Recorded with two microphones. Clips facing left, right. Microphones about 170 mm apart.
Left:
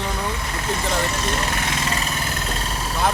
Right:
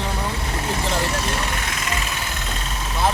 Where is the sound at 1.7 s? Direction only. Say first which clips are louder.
Left 3 dB; 30° left (ahead or behind).